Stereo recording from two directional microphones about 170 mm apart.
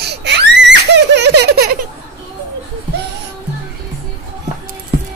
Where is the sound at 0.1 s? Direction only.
85° right.